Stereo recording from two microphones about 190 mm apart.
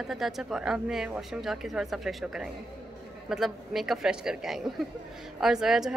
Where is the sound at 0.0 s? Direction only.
Centre (ahead or behind).